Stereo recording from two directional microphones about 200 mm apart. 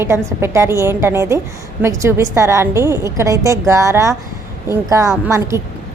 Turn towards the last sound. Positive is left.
turn(degrees=-15)  # may be behind; listen again after turning